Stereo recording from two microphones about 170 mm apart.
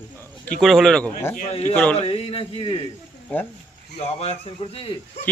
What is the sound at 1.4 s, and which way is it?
Speech, 40° left (ahead or behind).